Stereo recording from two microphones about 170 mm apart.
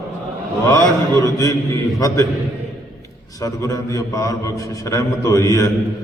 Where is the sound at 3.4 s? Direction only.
20° left (ahead or behind).